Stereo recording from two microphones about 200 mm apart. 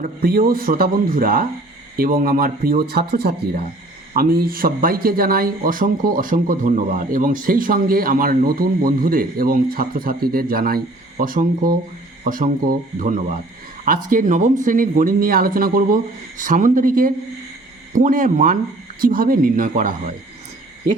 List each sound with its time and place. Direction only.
0.0 s speech: 45° right (ahead or behind)